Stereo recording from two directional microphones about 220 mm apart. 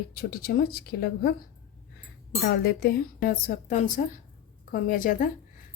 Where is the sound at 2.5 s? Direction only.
45° left (ahead or behind).